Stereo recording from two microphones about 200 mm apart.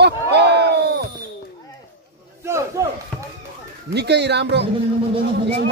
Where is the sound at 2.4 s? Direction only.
15° right (ahead or behind).